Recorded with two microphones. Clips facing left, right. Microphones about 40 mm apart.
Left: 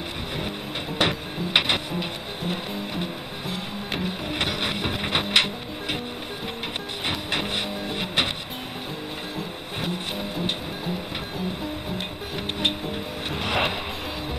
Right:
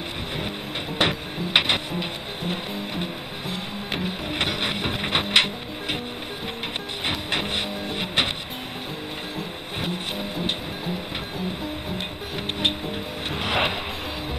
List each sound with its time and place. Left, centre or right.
0.9 s music: centre
7.1 s music: centre
9.8 s music: centre
12.5 s music: centre